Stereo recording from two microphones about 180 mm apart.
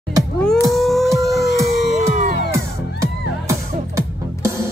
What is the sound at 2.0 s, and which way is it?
Music, 40° right (ahead or behind).